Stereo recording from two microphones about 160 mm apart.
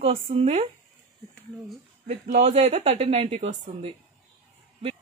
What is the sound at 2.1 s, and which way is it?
Speech, 40° right (ahead or behind).